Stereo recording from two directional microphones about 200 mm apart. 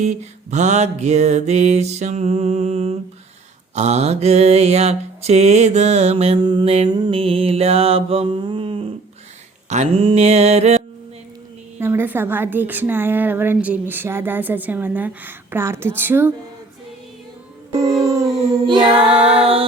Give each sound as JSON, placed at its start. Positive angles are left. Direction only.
{"t": 0.0, "sound": "mantra", "side_deg": -35}
{"t": 11.8, "sound": "a woman's voice", "side_deg": -10}
{"t": 17.7, "sound": "music", "side_deg": -15}
{"t": 19.0, "sound": "music", "side_deg": -5}
{"t": 19.3, "sound": "music", "side_deg": -30}